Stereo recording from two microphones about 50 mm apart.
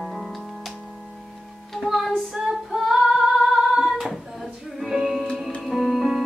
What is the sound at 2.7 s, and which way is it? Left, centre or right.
Female singing, centre.